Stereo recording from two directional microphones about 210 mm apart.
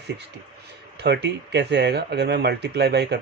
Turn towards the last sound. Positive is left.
turn(degrees=-55)  # may be behind; listen again after turning